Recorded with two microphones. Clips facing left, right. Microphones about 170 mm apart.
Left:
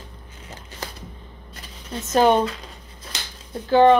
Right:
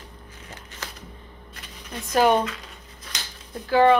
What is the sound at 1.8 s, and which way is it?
Speech, 25° left (ahead or behind).